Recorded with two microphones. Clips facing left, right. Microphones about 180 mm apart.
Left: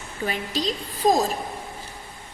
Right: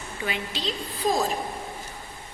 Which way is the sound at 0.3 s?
40° left (ahead or behind).